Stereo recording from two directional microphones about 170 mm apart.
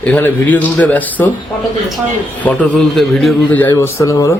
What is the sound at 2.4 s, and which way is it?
Speech, 10° left (ahead or behind).